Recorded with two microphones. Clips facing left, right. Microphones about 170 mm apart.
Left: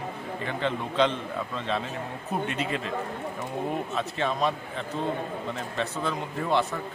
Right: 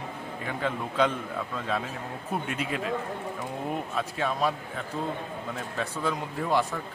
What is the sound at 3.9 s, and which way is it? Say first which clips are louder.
A man's voice: left 1 dB; 10° right (ahead or behind).